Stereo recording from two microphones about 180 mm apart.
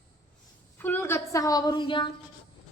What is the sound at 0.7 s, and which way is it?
A woman's voice, 10° left (ahead or behind).